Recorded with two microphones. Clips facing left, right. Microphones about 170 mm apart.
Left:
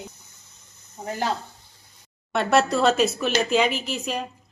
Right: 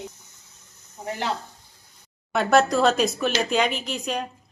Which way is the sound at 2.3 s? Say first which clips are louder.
Right 1 dB; centre (ahead or behind).